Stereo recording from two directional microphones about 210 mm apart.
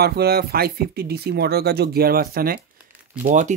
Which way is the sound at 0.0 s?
50° right (ahead or behind).